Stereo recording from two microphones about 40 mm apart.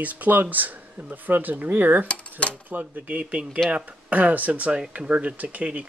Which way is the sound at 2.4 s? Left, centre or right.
Left.